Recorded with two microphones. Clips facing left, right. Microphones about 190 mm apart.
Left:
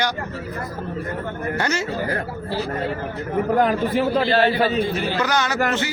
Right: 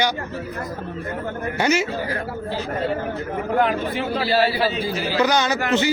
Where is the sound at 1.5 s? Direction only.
15° right (ahead or behind).